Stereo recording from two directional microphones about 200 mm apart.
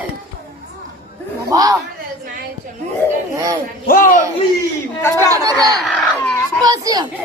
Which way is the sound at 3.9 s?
45° left (ahead or behind).